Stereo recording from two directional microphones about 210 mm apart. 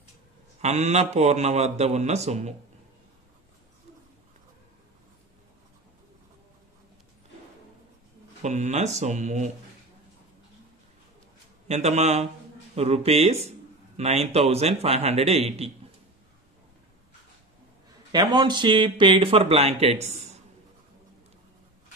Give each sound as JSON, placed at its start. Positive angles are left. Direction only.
{"t": 0.6, "sound": "a man's voice", "side_deg": -30}
{"t": 8.4, "sound": "a man's voice", "side_deg": -35}
{"t": 11.6, "sound": "a man's voice", "side_deg": -30}
{"t": 18.1, "sound": "a man's voice", "side_deg": -20}